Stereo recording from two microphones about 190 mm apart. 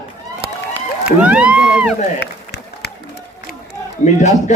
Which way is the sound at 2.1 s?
65° left (ahead or behind).